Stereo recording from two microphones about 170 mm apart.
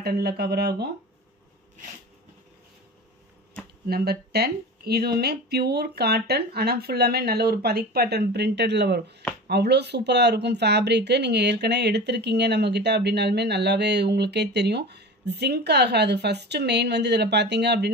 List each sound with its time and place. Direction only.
0.0 s speech: 70° right (ahead or behind)
3.9 s speech: 70° right (ahead or behind)